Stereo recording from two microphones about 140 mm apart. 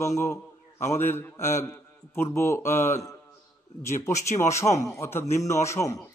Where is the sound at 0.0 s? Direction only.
20° left (ahead or behind).